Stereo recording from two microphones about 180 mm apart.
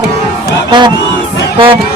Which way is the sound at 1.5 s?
30° right (ahead or behind).